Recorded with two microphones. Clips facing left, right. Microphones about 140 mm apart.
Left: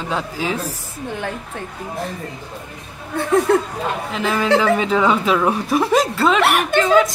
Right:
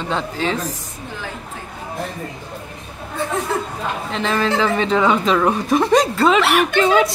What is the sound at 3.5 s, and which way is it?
Speech, 60° left (ahead or behind).